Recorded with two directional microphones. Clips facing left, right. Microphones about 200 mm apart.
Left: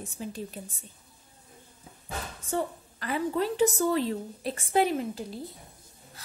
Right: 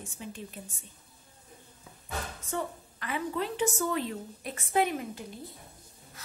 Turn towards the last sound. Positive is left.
turn(degrees=30)  # may be behind; listen again after turning